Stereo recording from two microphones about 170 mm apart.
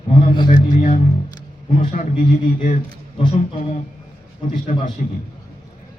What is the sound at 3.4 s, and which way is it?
A man's voice, 45° left (ahead or behind).